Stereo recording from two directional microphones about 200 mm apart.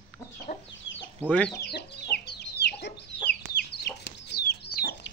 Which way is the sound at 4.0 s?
55° left (ahead or behind).